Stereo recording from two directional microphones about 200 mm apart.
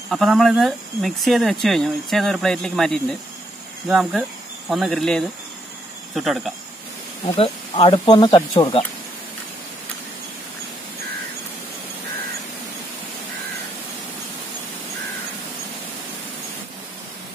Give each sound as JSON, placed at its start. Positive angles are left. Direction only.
{"t": 0.1, "sound": "speech", "side_deg": 0}
{"t": 7.3, "sound": "speech", "side_deg": 30}